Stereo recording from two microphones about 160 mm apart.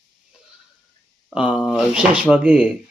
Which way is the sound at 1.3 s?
5° right (ahead or behind).